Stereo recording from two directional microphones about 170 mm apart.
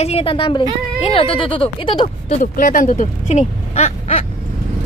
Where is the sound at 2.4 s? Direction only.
50° left (ahead or behind).